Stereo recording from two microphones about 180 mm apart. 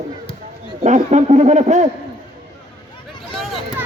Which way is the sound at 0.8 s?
40° right (ahead or behind).